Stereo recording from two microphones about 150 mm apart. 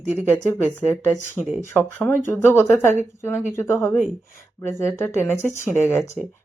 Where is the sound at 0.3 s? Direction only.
15° left (ahead or behind).